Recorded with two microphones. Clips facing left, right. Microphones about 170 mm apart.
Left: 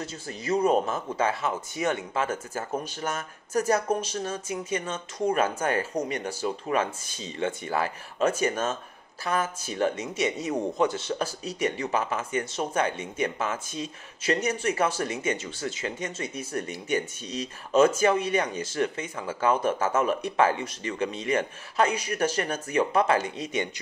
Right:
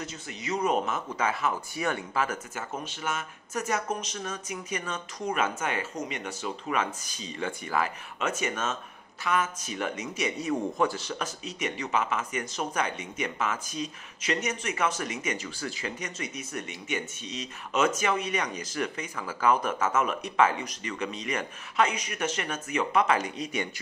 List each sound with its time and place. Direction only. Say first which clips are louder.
0.0 s speech: left 3 dB; 35° left (ahead or behind)